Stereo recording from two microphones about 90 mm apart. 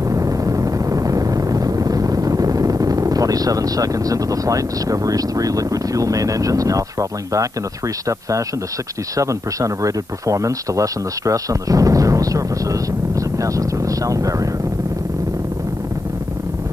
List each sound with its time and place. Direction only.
0.1 s vehicle: 40° right (ahead or behind)
9.1 s speech: 35° right (ahead or behind)